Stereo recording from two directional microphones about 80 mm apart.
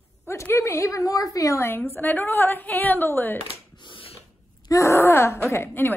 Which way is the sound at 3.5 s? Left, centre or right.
Left.